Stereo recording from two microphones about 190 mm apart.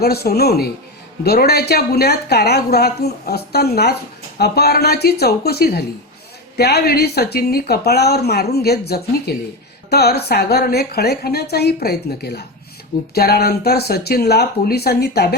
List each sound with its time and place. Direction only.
0.0 s speech: 55° left (ahead or behind)